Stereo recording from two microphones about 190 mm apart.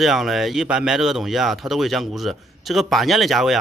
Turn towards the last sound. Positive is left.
turn(degrees=0)  # may be behind; listen again after turning